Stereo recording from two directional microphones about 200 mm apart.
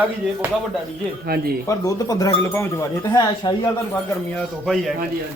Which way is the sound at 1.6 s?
15° left (ahead or behind).